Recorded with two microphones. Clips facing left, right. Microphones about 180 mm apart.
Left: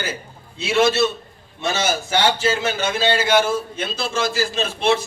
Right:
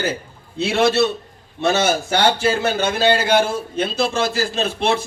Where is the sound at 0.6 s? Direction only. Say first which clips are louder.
Right 1 dB; 60° right (ahead or behind).